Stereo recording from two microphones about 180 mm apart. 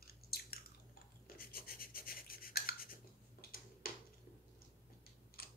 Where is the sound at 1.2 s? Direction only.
55° left (ahead or behind).